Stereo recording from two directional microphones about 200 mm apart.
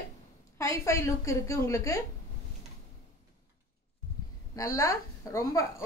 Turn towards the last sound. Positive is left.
turn(degrees=15)  # may be behind; listen again after turning